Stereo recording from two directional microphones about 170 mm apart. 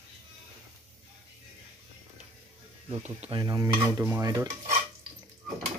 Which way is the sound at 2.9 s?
35° right (ahead or behind).